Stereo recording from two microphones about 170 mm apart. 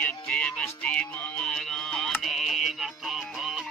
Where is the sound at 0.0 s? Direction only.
5° left (ahead or behind).